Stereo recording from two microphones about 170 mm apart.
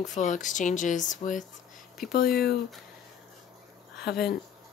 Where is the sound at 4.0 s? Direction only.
65° left (ahead or behind).